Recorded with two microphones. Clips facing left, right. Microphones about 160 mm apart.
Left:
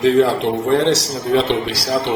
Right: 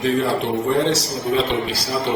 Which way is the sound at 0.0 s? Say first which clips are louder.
Left 6 dB; 90° left.